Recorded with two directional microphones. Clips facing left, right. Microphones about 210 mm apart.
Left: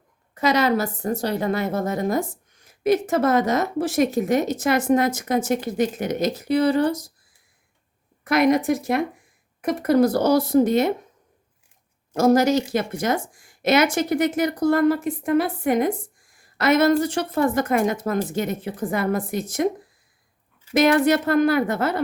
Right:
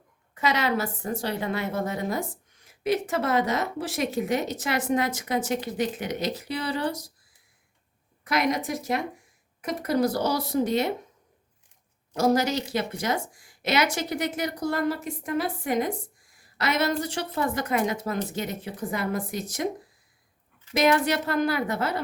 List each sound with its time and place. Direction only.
0.3 s a woman's voice: 40° left (ahead or behind)
8.2 s a woman's voice: 50° left (ahead or behind)
12.1 s speech: 50° left (ahead or behind)
20.7 s speech: 55° left (ahead or behind)